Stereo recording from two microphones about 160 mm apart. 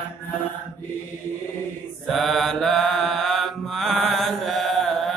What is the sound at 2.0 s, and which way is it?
Mantra, centre (ahead or behind).